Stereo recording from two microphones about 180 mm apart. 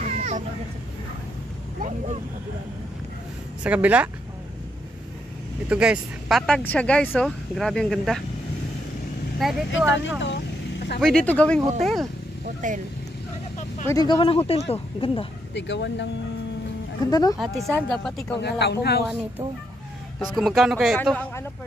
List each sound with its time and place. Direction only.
0.0 s a sound: 40° right (ahead or behind)
1.8 s speech: 45° right (ahead or behind)
3.6 s speech: 10° right (ahead or behind)
5.7 s speech: 5° right (ahead or behind)
9.4 s speech: centre (ahead or behind)
9.8 s speech: 90° left
11.0 s speech: 5° left (ahead or behind)
12.6 s speech: 45° right (ahead or behind)
13.8 s speech: 20° left (ahead or behind)
15.5 s speech: 80° left
17.0 s speech: 20° left (ahead or behind)
17.4 s speech: centre (ahead or behind)
18.4 s speech: 65° left (ahead or behind)
20.3 s speech: centre (ahead or behind)